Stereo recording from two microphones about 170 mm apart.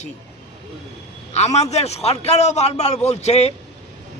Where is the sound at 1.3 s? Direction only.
40° left (ahead or behind).